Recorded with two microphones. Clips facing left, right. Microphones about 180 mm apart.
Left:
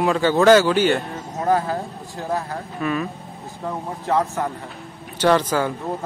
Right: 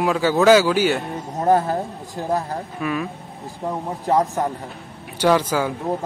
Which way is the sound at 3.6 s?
20° right (ahead or behind).